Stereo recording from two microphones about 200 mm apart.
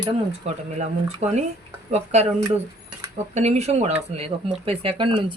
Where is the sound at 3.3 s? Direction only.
35° right (ahead or behind).